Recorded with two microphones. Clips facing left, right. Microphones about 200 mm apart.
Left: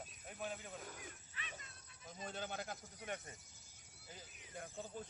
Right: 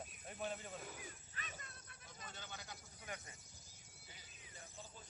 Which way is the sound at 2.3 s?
55° left (ahead or behind).